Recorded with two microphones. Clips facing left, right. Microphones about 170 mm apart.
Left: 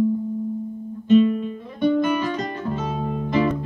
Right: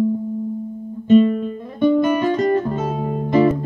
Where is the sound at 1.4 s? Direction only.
45° right (ahead or behind).